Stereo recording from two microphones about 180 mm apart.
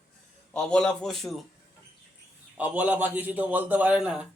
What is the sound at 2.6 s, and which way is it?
A man's voice, 10° right (ahead or behind).